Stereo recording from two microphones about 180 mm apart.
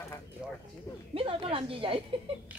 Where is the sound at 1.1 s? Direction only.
30° right (ahead or behind).